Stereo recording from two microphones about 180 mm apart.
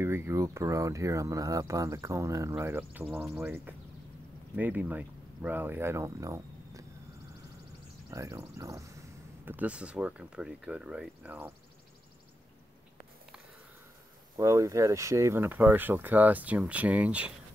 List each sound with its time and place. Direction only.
0.0 s speech: 15° right (ahead or behind)
8.1 s speech: 15° right (ahead or behind)
14.3 s speech: 15° right (ahead or behind)